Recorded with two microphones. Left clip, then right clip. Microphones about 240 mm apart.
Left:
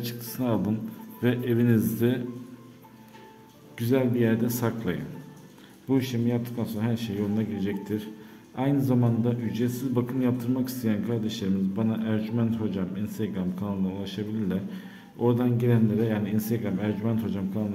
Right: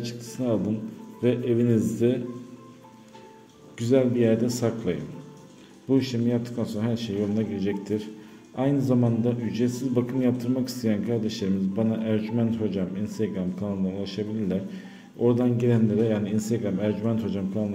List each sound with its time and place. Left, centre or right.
0.0 s speech: centre
3.7 s a man's voice: centre